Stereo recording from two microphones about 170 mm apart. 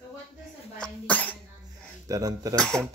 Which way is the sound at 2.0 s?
20° right (ahead or behind).